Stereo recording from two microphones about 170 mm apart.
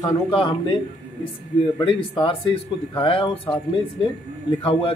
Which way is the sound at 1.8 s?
30° left (ahead or behind).